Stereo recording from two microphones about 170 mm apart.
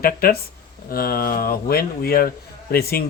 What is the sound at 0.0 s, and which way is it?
Speech, 60° left (ahead or behind).